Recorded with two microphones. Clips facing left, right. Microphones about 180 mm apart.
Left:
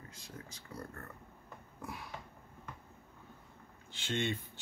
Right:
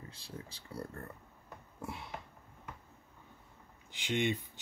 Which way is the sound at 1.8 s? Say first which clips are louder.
Right 2 dB; 25° right (ahead or behind).